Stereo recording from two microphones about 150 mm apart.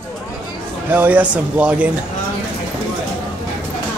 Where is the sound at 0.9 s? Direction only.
10° right (ahead or behind).